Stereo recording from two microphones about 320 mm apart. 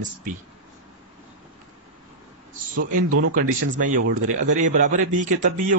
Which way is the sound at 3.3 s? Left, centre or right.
Right.